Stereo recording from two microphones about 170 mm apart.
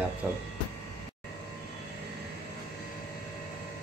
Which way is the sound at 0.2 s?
10° right (ahead or behind).